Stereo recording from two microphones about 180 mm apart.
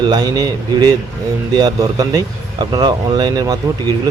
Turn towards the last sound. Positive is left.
turn(degrees=-20)  # may be behind; listen again after turning